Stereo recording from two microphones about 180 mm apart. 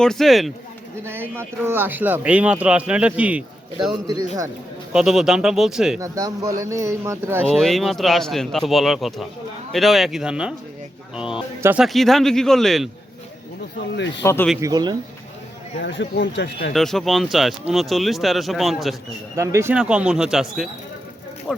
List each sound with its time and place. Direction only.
0.0 s a man's voice: centre (ahead or behind)
1.0 s speech: 10° right (ahead or behind)
4.0 s a man's voice: 20° right (ahead or behind)
4.9 s a man's voice: 5° right (ahead or behind)
6.0 s speech: 20° right (ahead or behind)
7.4 s a man's voice: centre (ahead or behind)
14.2 s speech: 10° left (ahead or behind)
14.6 s a man's voice: 20° right (ahead or behind)
15.8 s speech: 85° left; by 16.7 s 65° left (ahead or behind)
16.7 s a man's voice: centre (ahead or behind)
19.4 s speech: 15° right (ahead or behind)
19.7 s a man's voice: 5° right (ahead or behind)